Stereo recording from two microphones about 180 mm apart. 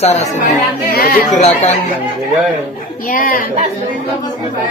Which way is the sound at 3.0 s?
50° left (ahead or behind).